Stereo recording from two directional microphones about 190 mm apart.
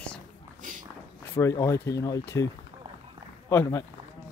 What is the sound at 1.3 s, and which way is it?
Speech, 15° left (ahead or behind).